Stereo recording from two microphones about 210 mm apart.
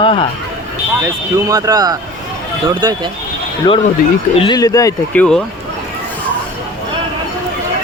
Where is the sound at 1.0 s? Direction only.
15° right (ahead or behind).